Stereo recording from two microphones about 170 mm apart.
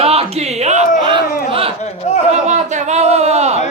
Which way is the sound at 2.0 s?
40° left (ahead or behind).